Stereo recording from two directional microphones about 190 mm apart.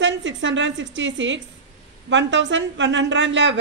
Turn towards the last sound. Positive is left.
turn(degrees=-75)  # may be behind; listen again after turning